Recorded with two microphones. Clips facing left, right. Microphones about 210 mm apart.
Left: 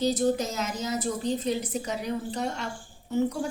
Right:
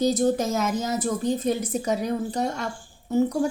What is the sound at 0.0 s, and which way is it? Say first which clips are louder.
A woman's voice: right 3 dB; 45° right (ahead or behind).